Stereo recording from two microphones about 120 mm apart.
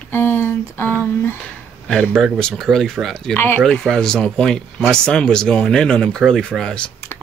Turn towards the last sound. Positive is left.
turn(degrees=5)  # may be behind; listen again after turning